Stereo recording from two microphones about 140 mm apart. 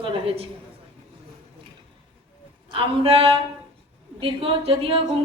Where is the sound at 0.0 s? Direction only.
40° right (ahead or behind).